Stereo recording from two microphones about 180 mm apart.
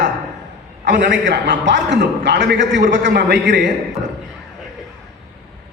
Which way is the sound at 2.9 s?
75° right (ahead or behind).